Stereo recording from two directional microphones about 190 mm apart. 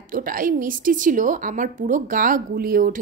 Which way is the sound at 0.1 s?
45° right (ahead or behind).